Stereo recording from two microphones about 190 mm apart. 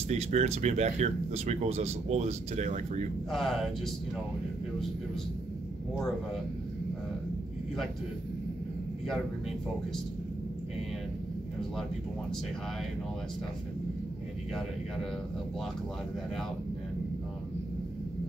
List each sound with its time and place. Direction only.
0.1 s speech: 35° right (ahead or behind)
3.3 s speech: centre (ahead or behind)